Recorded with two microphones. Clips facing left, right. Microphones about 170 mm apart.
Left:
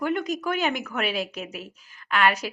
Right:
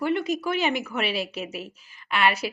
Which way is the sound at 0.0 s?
5° right (ahead or behind).